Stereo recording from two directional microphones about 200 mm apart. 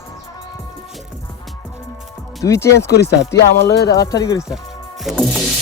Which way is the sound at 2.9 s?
55° left (ahead or behind).